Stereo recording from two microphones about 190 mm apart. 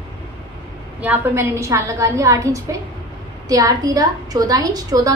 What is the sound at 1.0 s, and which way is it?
A woman's voice, 10° right (ahead or behind).